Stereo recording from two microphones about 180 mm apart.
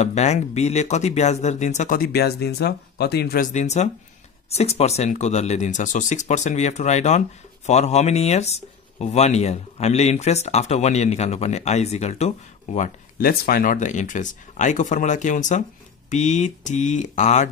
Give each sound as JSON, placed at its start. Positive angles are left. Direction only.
{"t": 0.0, "sound": "speech", "side_deg": 40}
{"t": 3.5, "sound": "speech", "side_deg": 40}